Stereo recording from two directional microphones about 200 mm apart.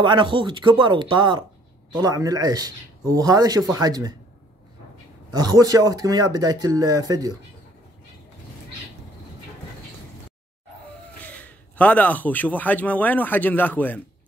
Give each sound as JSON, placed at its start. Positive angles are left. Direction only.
{"t": 0.0, "sound": "speech", "side_deg": -25}
{"t": 5.3, "sound": "speech", "side_deg": -20}
{"t": 11.2, "sound": "a man's voice", "side_deg": 10}